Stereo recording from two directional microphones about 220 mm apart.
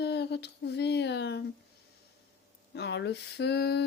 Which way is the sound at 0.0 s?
50° left (ahead or behind).